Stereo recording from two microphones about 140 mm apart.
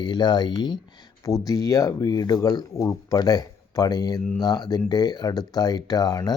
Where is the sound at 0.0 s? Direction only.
30° left (ahead or behind).